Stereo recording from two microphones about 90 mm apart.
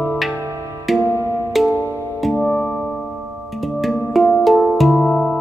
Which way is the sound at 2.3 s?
10° left (ahead or behind).